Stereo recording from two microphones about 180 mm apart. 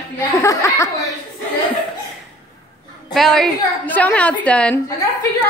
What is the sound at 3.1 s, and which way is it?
A woman's voice, centre (ahead or behind).